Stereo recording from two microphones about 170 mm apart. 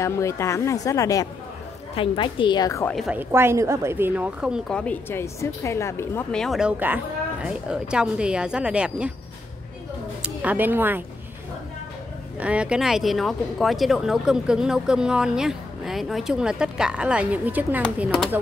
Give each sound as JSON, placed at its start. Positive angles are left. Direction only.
{"t": 0.0, "sound": "a woman's voice", "side_deg": 15}
{"t": 2.9, "sound": "speech", "side_deg": 0}
{"t": 3.2, "sound": "speech", "side_deg": -15}
{"t": 4.7, "sound": "speech", "side_deg": 10}
{"t": 6.3, "sound": "speech", "side_deg": 0}
{"t": 10.2, "sound": "speech", "side_deg": -10}
{"t": 12.4, "sound": "speech", "side_deg": -5}